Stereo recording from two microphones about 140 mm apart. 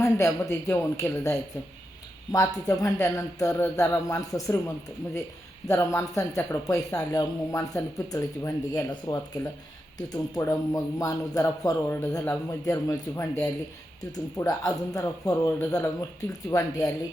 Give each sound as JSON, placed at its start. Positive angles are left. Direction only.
{"t": 0.0, "sound": "speech", "side_deg": 20}
{"t": 5.6, "sound": "speech", "side_deg": 20}